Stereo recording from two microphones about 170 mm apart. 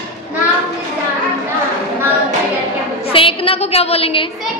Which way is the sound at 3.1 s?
30° left (ahead or behind).